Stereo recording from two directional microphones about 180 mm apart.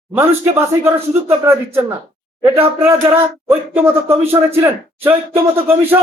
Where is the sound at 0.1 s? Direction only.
15° right (ahead or behind).